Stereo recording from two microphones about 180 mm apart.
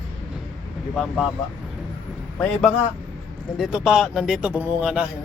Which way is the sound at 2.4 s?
5° left (ahead or behind).